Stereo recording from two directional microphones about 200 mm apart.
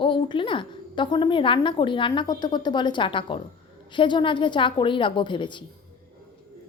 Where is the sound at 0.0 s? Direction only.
25° left (ahead or behind).